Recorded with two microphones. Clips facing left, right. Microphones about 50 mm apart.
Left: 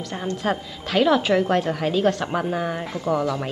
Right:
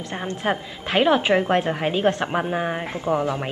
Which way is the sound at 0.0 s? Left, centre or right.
Right.